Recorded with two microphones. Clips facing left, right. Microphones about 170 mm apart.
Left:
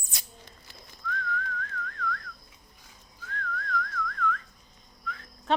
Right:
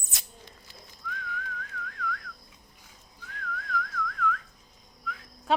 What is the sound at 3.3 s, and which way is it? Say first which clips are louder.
Whistling: left 1 dB; 5° right (ahead or behind).